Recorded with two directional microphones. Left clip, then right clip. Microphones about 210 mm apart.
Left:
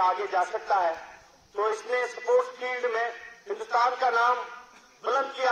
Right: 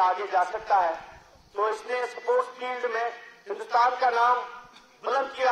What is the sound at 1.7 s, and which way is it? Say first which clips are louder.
A man's voice: left 1 dB; 15° left (ahead or behind).